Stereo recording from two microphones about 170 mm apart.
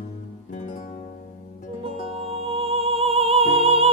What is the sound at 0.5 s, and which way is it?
Music, 45° left (ahead or behind).